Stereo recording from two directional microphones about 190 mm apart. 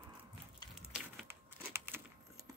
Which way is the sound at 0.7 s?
5° right (ahead or behind).